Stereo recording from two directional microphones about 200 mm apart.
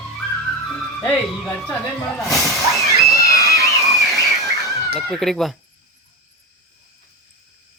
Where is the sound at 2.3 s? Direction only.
Centre (ahead or behind).